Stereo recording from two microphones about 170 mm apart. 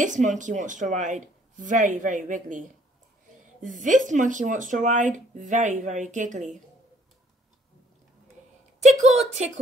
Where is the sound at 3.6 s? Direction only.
50° right (ahead or behind).